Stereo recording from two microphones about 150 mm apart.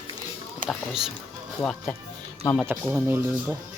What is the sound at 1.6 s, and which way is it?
Speech, 5° left (ahead or behind).